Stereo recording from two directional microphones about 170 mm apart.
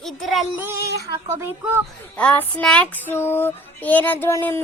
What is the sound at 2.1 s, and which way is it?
Female singing, 10° left (ahead or behind).